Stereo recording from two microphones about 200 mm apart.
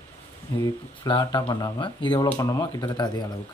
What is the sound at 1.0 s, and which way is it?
Speech, 20° left (ahead or behind).